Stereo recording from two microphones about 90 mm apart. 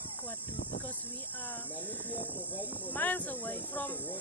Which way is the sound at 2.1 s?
20° left (ahead or behind).